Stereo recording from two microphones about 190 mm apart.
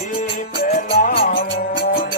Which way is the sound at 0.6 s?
55° left (ahead or behind).